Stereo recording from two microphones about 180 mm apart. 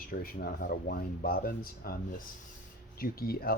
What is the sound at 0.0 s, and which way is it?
Speech, 55° left (ahead or behind).